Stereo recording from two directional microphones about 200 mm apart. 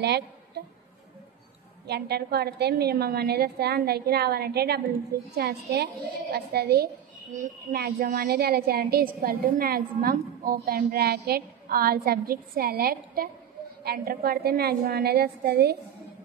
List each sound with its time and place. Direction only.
1.9 s a woman's voice: 55° right (ahead or behind)